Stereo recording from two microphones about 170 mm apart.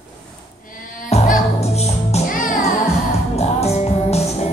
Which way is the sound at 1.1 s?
40° left (ahead or behind).